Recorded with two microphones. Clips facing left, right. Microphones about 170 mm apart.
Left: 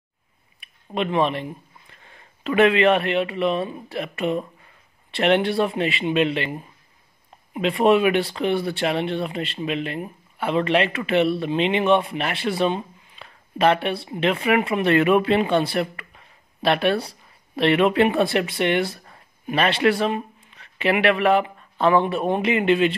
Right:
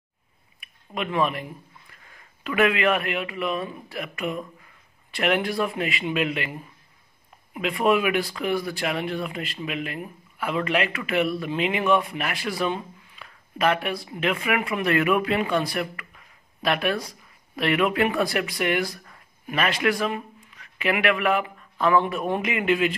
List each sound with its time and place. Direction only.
0.6 s speech: 30° left (ahead or behind)